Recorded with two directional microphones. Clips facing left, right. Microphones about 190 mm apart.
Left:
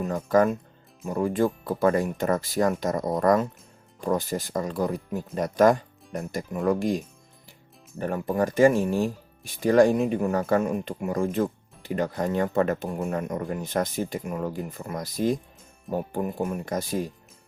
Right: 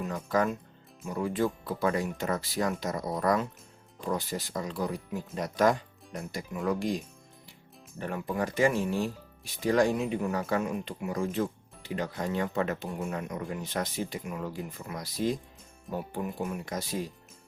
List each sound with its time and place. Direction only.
0.0 s speech: 45° left (ahead or behind)